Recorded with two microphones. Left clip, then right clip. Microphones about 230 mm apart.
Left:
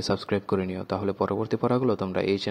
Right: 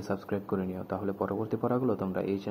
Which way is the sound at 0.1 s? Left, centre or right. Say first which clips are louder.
Left 5 dB; left.